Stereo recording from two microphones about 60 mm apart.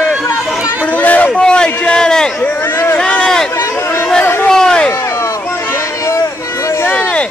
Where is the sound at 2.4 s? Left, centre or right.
Left.